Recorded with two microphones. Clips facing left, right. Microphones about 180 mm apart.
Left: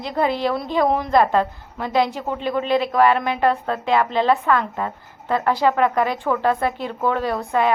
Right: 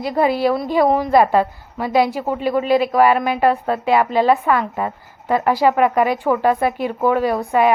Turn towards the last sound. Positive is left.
turn(degrees=-15)  # may be behind; listen again after turning